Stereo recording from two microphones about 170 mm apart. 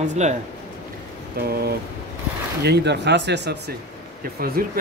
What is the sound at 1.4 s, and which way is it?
Speech, 65° right (ahead or behind).